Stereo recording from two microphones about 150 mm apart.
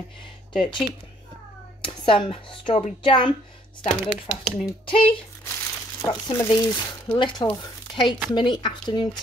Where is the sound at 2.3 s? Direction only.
40° left (ahead or behind).